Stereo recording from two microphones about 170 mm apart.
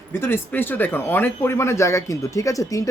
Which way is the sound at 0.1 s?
15° left (ahead or behind).